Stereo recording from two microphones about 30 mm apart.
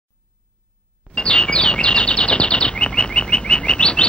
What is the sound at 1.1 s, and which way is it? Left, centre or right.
Chirp, left.